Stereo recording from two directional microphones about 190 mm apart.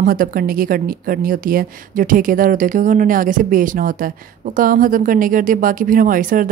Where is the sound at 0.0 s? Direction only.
45° right (ahead or behind).